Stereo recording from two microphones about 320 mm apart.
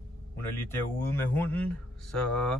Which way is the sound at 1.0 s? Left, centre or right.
Centre.